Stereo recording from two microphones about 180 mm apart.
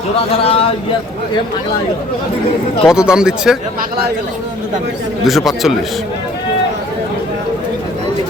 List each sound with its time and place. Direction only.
0.2 s speech: 30° left (ahead or behind)
2.8 s speech: 5° right (ahead or behind)
5.2 s speech: centre (ahead or behind)